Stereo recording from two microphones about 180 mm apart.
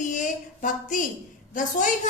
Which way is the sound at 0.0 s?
45° left (ahead or behind).